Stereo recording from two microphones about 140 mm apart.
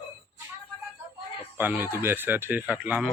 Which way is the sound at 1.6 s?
15° right (ahead or behind).